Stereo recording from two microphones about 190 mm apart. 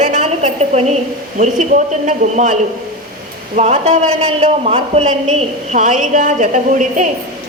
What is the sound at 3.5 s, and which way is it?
A woman's voice, 35° right (ahead or behind).